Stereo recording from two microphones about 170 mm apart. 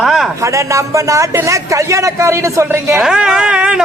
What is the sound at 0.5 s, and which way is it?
A man's voice, 20° right (ahead or behind).